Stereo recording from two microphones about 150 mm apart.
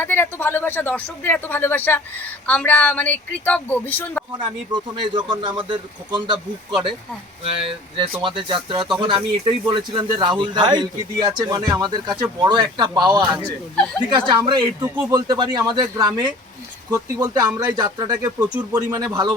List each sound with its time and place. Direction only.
0.0 s speech: 15° left (ahead or behind)
4.7 s speech: 30° right (ahead or behind)